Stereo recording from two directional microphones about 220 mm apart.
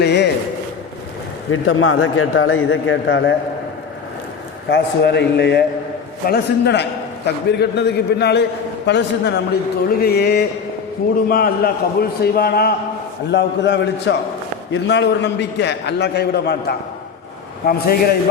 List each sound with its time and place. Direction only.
0.0 s a sound: 50° left (ahead or behind)
1.5 s a man's voice: 70° left (ahead or behind)
4.7 s a man's voice: 50° left (ahead or behind)